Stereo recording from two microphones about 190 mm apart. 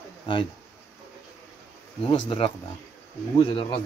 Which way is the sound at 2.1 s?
30° left (ahead or behind).